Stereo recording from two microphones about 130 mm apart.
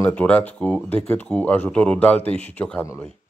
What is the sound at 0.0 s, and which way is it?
Speech, 10° left (ahead or behind).